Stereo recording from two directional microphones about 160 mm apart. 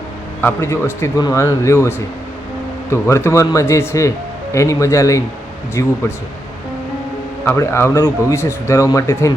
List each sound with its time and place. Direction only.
0.4 s speech: 15° left (ahead or behind)
7.4 s speech: 15° left (ahead or behind)